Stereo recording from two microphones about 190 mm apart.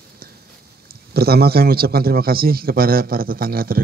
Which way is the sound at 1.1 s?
55° right (ahead or behind).